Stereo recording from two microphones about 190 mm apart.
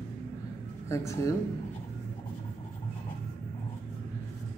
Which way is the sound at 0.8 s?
15° left (ahead or behind).